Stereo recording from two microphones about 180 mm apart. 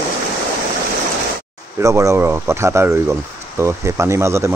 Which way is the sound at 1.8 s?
15° right (ahead or behind).